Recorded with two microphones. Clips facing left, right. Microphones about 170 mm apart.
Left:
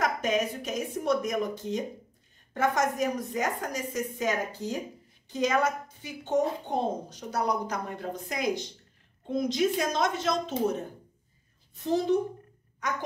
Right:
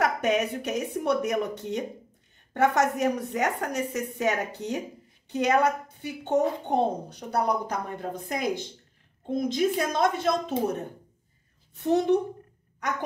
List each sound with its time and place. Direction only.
0.0 s a woman's voice: 65° right (ahead or behind)